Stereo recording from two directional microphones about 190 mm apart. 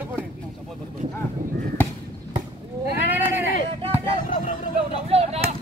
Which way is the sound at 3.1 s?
10° right (ahead or behind).